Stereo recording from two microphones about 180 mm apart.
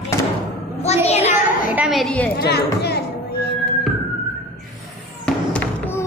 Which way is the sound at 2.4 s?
65° left (ahead or behind).